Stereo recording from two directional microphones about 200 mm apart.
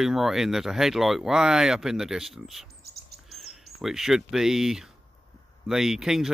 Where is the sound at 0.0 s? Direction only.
Centre (ahead or behind).